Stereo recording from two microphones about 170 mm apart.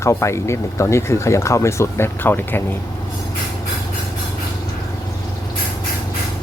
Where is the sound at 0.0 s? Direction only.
15° left (ahead or behind).